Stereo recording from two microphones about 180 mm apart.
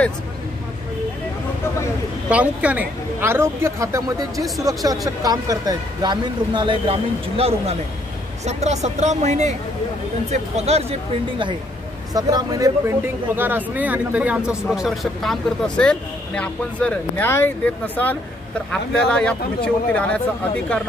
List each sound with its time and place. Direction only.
2.2 s a woman's voice: 5° right (ahead or behind)